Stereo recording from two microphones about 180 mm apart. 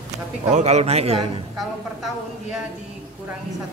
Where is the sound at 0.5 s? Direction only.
40° right (ahead or behind).